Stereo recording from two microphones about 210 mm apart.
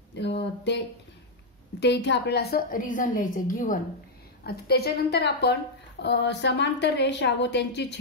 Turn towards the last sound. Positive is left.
turn(degrees=55)  # may be behind; listen again after turning